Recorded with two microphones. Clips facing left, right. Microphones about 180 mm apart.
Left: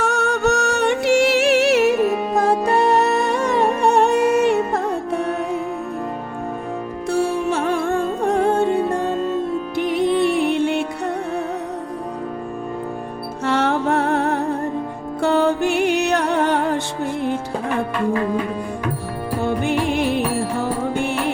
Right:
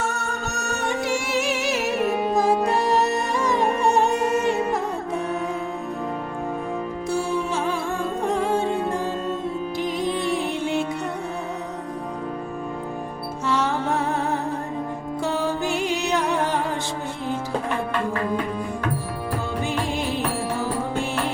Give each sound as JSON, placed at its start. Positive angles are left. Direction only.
{"t": 0.0, "sound": "music", "side_deg": 75}
{"t": 7.1, "sound": "music", "side_deg": 65}
{"t": 9.7, "sound": "music", "side_deg": 65}
{"t": 13.4, "sound": "music", "side_deg": 65}
{"t": 19.4, "sound": "music", "side_deg": 65}